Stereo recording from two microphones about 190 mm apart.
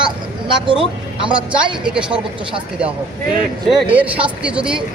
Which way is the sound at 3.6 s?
5° right (ahead or behind).